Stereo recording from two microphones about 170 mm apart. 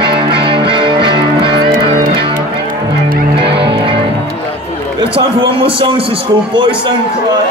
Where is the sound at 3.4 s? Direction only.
30° right (ahead or behind).